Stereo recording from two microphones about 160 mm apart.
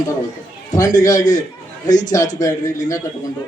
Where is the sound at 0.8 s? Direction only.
20° left (ahead or behind).